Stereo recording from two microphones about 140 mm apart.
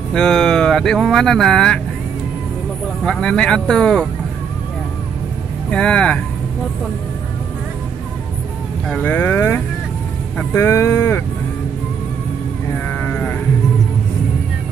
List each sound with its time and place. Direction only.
0.1 s speech: 5° left (ahead or behind)
3.1 s speech: 5° left (ahead or behind)
5.7 s speech: 5° left (ahead or behind)
8.8 s speech: 10° left (ahead or behind)
12.8 s sheep: 10° left (ahead or behind)